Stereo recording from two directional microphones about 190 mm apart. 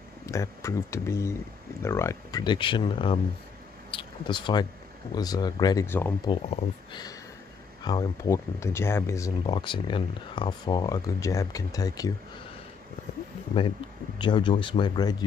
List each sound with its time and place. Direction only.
0.3 s speech: 15° left (ahead or behind)
6.2 s speech: 25° left (ahead or behind)
13.6 s speech: 25° left (ahead or behind)